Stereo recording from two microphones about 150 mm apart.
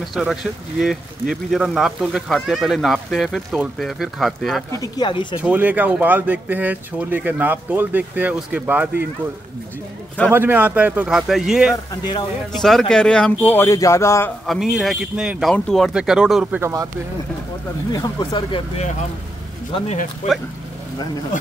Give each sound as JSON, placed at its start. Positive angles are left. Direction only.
{"t": 0.1, "sound": "speech", "side_deg": 0}
{"t": 4.7, "sound": "speech", "side_deg": 25}
{"t": 5.4, "sound": "speech", "side_deg": -10}
{"t": 10.3, "sound": "speech", "side_deg": -15}
{"t": 11.7, "sound": "speech", "side_deg": 25}
{"t": 12.5, "sound": "a man's voice", "side_deg": 0}
{"t": 14.4, "sound": "speech", "side_deg": 0}
{"t": 16.6, "sound": "speech", "side_deg": -20}
{"t": 17.9, "sound": "speech", "side_deg": 30}
{"t": 20.2, "sound": "speech", "side_deg": 55}